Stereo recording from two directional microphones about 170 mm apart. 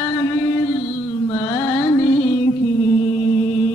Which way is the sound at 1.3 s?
20° left (ahead or behind).